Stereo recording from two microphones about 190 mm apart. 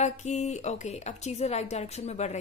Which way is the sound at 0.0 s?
35° left (ahead or behind).